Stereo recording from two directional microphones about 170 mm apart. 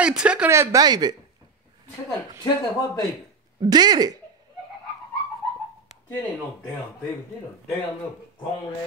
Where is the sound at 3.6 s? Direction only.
25° right (ahead or behind).